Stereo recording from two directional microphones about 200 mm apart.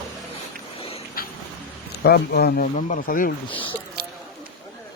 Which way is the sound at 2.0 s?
50° left (ahead or behind).